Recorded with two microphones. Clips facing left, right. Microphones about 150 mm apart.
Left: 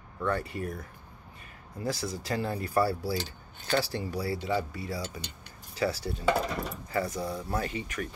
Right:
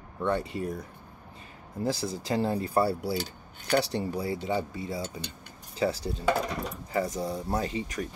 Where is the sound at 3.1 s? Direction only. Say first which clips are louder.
Right 2 dB; 30° left (ahead or behind).